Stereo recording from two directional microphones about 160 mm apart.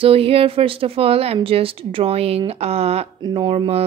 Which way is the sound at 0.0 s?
35° right (ahead or behind).